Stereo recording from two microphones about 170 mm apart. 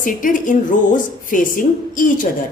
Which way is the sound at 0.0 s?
50° left (ahead or behind).